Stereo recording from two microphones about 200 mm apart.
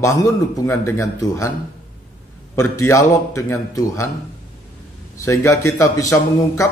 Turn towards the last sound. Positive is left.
turn(degrees=15)  # may be behind; listen again after turning